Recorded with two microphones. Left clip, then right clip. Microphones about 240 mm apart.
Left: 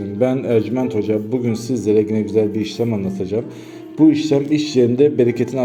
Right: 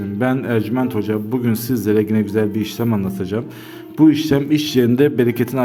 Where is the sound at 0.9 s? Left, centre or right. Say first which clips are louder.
Left 2 dB; right.